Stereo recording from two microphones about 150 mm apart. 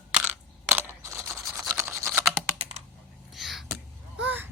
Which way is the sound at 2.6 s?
45° right (ahead or behind).